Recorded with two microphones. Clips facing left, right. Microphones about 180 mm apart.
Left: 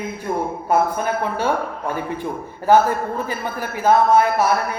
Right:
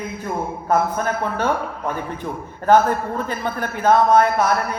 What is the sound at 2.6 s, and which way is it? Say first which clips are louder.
Speech: even; 10° left (ahead or behind).